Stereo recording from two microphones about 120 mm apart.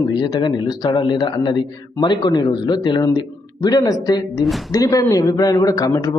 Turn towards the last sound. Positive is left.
turn(degrees=30)  # may be behind; listen again after turning